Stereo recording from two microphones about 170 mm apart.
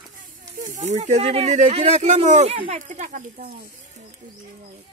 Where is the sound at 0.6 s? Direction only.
45° right (ahead or behind).